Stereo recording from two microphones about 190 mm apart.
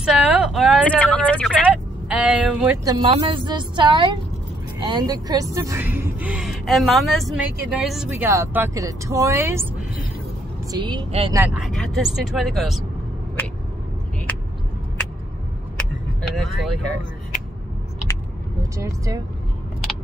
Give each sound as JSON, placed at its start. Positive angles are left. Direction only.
{"t": 0.0, "sound": "a sound", "side_deg": 0}
{"t": 0.8, "sound": "speech", "side_deg": 5}
{"t": 1.7, "sound": "speech", "side_deg": -5}
{"t": 2.8, "sound": "a woman's voice", "side_deg": -25}
{"t": 8.1, "sound": "speech", "side_deg": -15}
{"t": 10.7, "sound": "a woman's voice", "side_deg": -25}
{"t": 11.3, "sound": "speech", "side_deg": -5}
{"t": 15.8, "sound": "vehicle", "side_deg": 0}
{"t": 18.8, "sound": "speech", "side_deg": -15}